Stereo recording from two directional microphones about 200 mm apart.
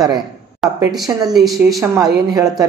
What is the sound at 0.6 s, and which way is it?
A woman's voice, centre (ahead or behind).